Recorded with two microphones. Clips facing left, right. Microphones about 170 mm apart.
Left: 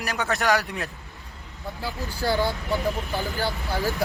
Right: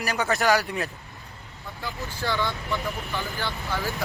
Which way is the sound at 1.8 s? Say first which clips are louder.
Left 2 dB; 35° left (ahead or behind).